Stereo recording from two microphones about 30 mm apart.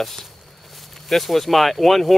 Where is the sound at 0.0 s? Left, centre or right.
Centre.